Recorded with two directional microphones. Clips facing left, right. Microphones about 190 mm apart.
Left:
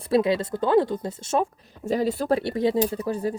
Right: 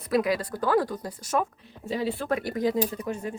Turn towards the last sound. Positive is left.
turn(degrees=35)  # may be behind; listen again after turning